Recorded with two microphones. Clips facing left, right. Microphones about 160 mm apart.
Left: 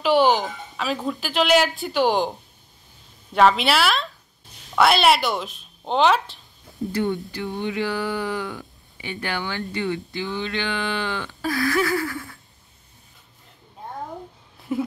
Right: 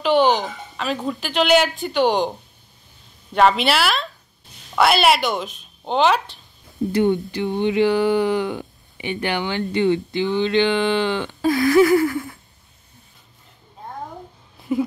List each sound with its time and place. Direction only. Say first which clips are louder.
0.0 s speech: right 1 dB; 5° left (ahead or behind)
3.3 s speech: right 1 dB; centre (ahead or behind)
6.9 s speech: right 6 dB; 20° right (ahead or behind)
14.7 s a sound: right 4 dB; centre (ahead or behind)